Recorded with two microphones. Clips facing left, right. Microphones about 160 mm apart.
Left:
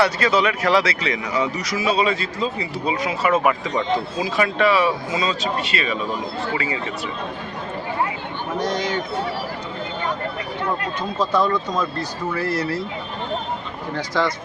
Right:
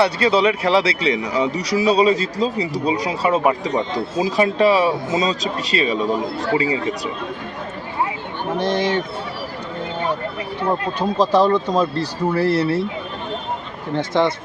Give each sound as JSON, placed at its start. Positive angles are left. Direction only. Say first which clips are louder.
{"t": 0.0, "sound": "speech", "louder": "right 3 dB", "side_deg": -30}
{"t": 8.5, "sound": "speech", "louder": "right 4 dB", "side_deg": -25}
{"t": 11.2, "sound": "speech", "louder": "right 4 dB", "side_deg": -35}
{"t": 13.9, "sound": "speech", "louder": "right 4 dB", "side_deg": -25}